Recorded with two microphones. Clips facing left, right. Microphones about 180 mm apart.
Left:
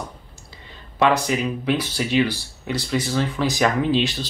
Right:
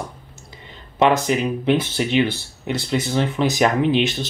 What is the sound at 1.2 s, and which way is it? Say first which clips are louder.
Speech: right 3 dB; 20° right (ahead or behind).